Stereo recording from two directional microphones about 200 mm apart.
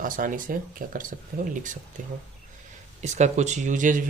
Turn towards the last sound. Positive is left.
turn(degrees=-40)  # may be behind; listen again after turning